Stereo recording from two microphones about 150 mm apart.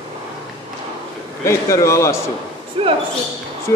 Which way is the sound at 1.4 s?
20° left (ahead or behind).